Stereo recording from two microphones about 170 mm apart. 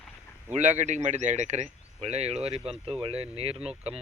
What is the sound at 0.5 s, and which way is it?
Speech, 45° right (ahead or behind).